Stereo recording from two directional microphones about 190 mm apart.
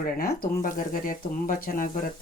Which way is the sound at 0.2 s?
50° left (ahead or behind).